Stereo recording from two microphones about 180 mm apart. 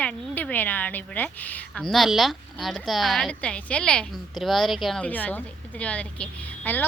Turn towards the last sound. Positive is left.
turn(degrees=10)  # may be behind; listen again after turning